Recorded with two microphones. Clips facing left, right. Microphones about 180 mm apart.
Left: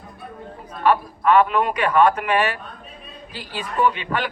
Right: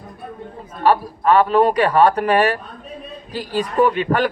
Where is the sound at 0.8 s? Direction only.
35° right (ahead or behind).